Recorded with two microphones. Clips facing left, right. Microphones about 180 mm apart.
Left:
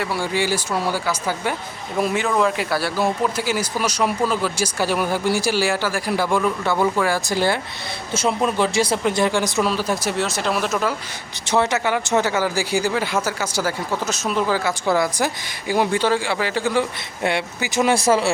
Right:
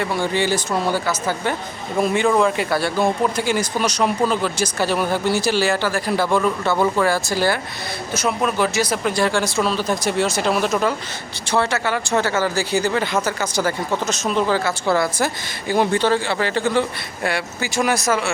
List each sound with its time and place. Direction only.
0.0 s speech: 5° left (ahead or behind)
7.1 s speech: 20° left (ahead or behind); by 10.9 s centre (ahead or behind)
11.4 s speech: 20° left (ahead or behind)
17.2 s speech: 20° left (ahead or behind)